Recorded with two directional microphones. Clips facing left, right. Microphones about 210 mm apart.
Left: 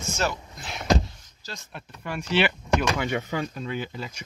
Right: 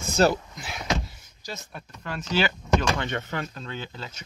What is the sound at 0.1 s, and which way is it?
Speech, 35° right (ahead or behind).